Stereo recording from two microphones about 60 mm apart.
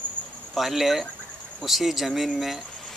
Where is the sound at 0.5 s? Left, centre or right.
Centre.